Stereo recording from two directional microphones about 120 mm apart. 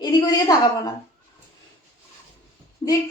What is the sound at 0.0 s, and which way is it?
Speech, 35° left (ahead or behind).